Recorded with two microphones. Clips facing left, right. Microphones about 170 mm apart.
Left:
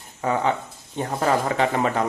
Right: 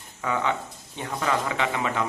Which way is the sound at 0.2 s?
35° left (ahead or behind).